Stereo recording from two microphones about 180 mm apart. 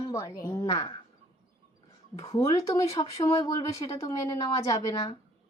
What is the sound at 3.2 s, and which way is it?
Speech, 30° left (ahead or behind).